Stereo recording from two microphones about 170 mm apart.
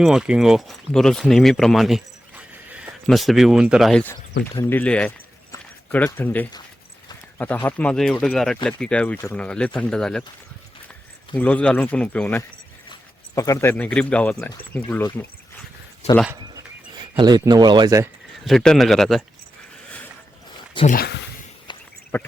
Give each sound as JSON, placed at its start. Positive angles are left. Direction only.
{"t": 0.0, "sound": "speech", "side_deg": -5}
{"t": 4.5, "sound": "a man's voice", "side_deg": 10}
{"t": 11.3, "sound": "speech", "side_deg": 10}
{"t": 12.9, "sound": "speech", "side_deg": 20}
{"t": 16.0, "sound": "speech", "side_deg": 40}
{"t": 16.9, "sound": "speech", "side_deg": -25}
{"t": 18.4, "sound": "a man's voice", "side_deg": 5}
{"t": 20.8, "sound": "speech", "side_deg": 60}
{"t": 21.7, "sound": "a sound", "side_deg": 25}
{"t": 22.1, "sound": "speech", "side_deg": 15}